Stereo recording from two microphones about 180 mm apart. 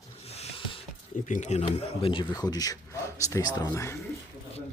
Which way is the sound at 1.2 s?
45° left (ahead or behind).